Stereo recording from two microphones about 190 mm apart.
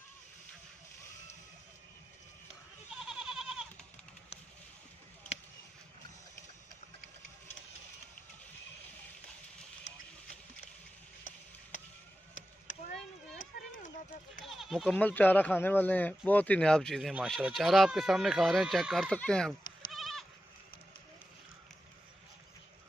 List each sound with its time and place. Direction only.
2.9 s goat: 5° right (ahead or behind)
13.4 s run: 45° left (ahead or behind)
14.4 s speech: centre (ahead or behind)